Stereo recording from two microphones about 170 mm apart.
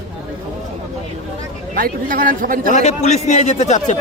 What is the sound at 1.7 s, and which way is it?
Speech, 55° right (ahead or behind).